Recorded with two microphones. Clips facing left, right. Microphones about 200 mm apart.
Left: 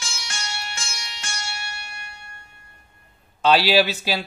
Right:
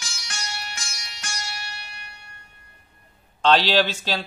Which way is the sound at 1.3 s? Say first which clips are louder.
Left 1 dB; 50° left (ahead or behind).